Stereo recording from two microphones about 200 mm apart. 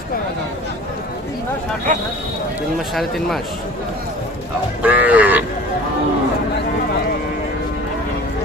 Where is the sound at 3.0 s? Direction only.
Centre (ahead or behind).